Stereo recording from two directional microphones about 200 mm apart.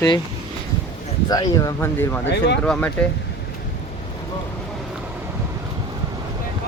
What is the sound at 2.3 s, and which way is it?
Speech, 60° left (ahead or behind).